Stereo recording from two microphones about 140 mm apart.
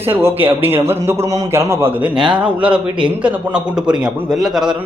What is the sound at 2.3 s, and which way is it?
A man's voice, 10° right (ahead or behind).